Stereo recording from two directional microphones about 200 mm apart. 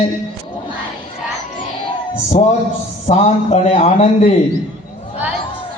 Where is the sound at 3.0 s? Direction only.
35° left (ahead or behind).